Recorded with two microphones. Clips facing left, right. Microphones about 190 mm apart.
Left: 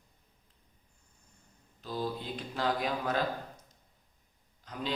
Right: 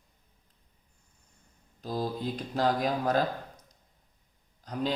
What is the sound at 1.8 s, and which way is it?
Speech, 40° right (ahead or behind).